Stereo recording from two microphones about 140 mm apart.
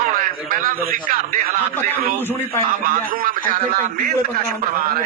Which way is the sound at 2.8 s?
90° right.